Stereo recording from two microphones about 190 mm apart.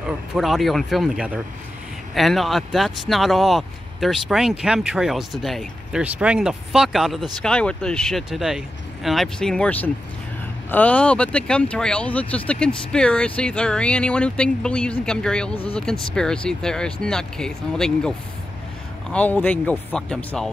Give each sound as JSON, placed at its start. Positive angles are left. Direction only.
{"t": 0.0, "sound": "speech", "side_deg": 0}
{"t": 15.5, "sound": "speech", "side_deg": 30}
{"t": 15.8, "sound": "speech", "side_deg": 5}